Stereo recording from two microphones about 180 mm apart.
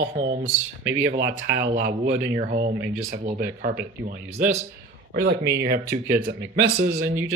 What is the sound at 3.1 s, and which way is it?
Speech, 50° right (ahead or behind).